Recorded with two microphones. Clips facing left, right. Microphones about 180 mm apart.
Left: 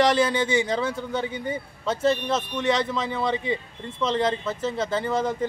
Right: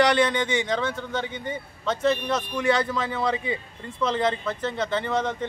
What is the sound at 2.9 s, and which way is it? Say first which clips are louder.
Speech: even; centre (ahead or behind).